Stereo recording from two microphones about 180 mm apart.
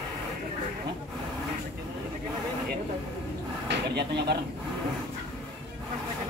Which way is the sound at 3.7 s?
65° right (ahead or behind).